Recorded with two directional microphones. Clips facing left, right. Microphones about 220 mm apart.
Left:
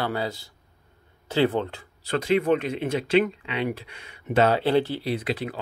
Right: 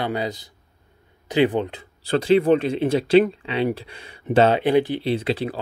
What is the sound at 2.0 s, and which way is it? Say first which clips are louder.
Speech: right 5 dB; 30° right (ahead or behind).